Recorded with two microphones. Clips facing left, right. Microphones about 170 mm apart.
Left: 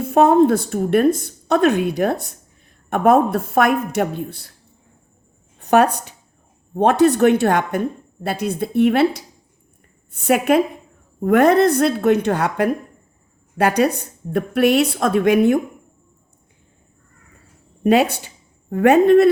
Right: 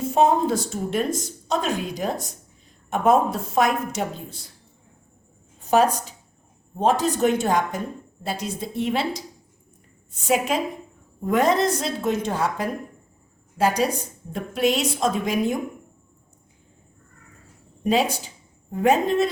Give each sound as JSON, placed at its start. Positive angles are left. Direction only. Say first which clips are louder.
{"t": 0.0, "sound": "a sound", "louder": "left 4 dB", "side_deg": 60}
{"t": 0.4, "sound": "speech", "louder": "left 7 dB", "side_deg": 60}
{"t": 5.5, "sound": "speech", "louder": "left 4 dB", "side_deg": 65}
{"t": 17.8, "sound": "speech", "louder": "left 6 dB", "side_deg": 65}